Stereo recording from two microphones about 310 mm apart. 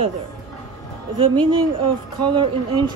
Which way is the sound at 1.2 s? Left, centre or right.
Centre.